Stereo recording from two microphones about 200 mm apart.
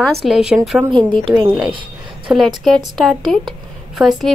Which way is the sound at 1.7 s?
25° right (ahead or behind).